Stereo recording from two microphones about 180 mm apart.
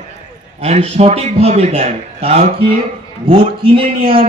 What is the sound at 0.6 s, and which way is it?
A man's voice, 35° right (ahead or behind).